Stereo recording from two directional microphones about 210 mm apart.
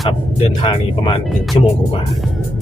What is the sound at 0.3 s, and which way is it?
Speech, 25° left (ahead or behind).